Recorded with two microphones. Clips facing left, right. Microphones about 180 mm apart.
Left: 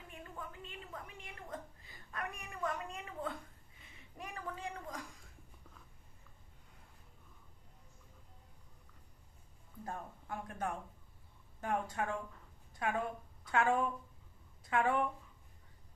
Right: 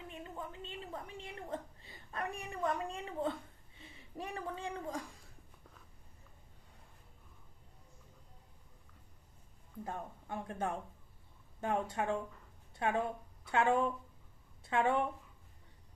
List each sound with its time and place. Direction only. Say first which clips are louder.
0.1 s a woman's voice: right 1 dB; 20° right (ahead or behind)
9.8 s speech: right 2 dB; 25° right (ahead or behind)
14.6 s a sound: right 1 dB; 25° right (ahead or behind)